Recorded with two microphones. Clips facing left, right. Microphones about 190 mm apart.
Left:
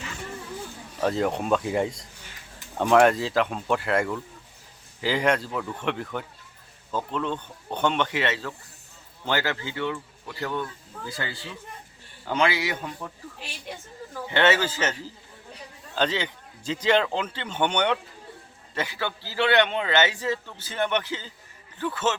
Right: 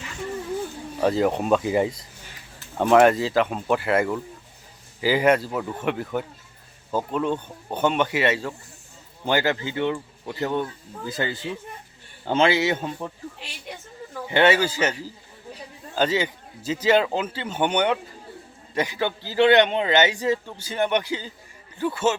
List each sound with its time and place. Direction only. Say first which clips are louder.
1.0 s a man's voice: right 4 dB; centre (ahead or behind); by 13.1 s 25° right (ahead or behind)
13.4 s a woman's voice: even; centre (ahead or behind)
14.3 s a man's voice: right 3 dB; 15° right (ahead or behind)